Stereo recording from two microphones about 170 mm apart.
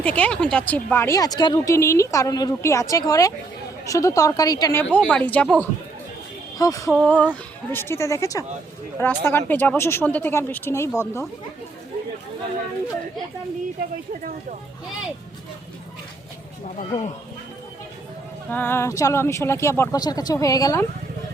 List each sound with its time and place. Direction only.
0.0 s speech: 5° left (ahead or behind)
6.6 s speech: 20° left (ahead or behind)
6.9 s speech: 5° left (ahead or behind)
18.5 s speech: 10° left (ahead or behind)